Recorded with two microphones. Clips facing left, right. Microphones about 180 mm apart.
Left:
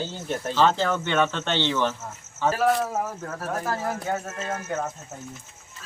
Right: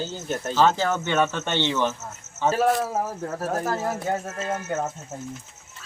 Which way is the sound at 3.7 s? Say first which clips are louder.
Right 2 dB; 25° right (ahead or behind).